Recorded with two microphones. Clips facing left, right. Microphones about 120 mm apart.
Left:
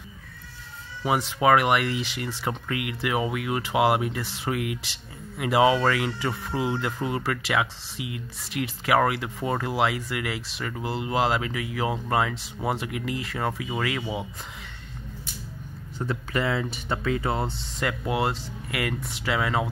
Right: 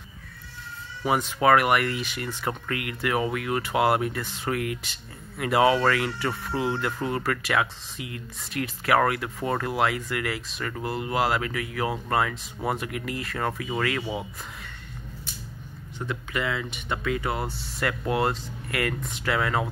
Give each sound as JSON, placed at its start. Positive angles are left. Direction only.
{"t": 1.0, "sound": "speech", "side_deg": 15}
{"t": 16.1, "sound": "speech", "side_deg": 35}